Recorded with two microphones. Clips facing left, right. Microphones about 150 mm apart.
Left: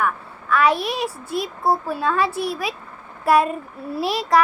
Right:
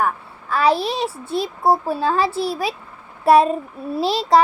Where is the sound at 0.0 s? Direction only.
35° right (ahead or behind).